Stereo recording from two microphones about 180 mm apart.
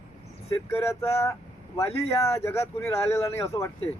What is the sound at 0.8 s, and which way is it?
Speech, 15° left (ahead or behind).